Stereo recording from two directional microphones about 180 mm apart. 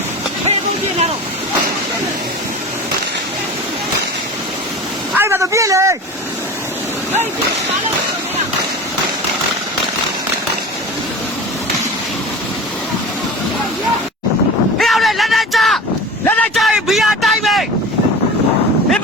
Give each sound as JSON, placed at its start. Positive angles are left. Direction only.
{"t": 5.1, "sound": "speech", "side_deg": -15}
{"t": 14.8, "sound": "a sound", "side_deg": 0}
{"t": 16.2, "sound": "vehicle", "side_deg": 10}